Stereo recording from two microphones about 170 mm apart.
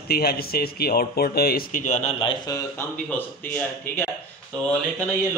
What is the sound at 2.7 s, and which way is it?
Speech, 10° left (ahead or behind).